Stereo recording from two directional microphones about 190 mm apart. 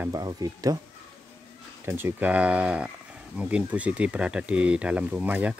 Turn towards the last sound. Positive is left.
turn(degrees=-10)  # may be behind; listen again after turning